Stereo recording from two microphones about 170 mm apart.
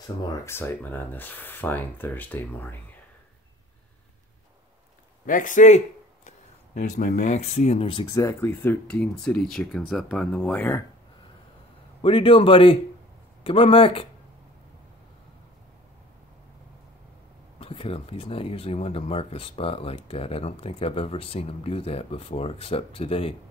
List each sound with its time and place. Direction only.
0.0 s speech: 15° left (ahead or behind)
5.2 s a man's voice: 50° left (ahead or behind); by 8.2 s 30° left (ahead or behind)
8.2 s speech: 15° left (ahead or behind)
12.0 s speech: 30° left (ahead or behind)
17.6 s speech: 35° left (ahead or behind)